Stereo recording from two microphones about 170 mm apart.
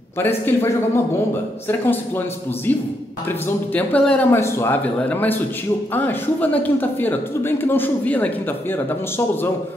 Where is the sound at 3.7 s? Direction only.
10° left (ahead or behind).